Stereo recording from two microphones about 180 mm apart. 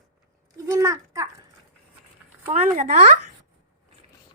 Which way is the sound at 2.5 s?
40° right (ahead or behind).